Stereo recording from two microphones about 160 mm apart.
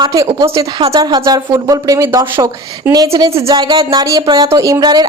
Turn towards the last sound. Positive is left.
turn(degrees=-25)  # may be behind; listen again after turning